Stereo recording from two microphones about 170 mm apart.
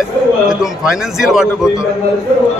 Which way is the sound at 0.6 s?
5° right (ahead or behind).